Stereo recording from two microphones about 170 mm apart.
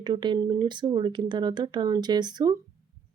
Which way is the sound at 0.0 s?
25° right (ahead or behind).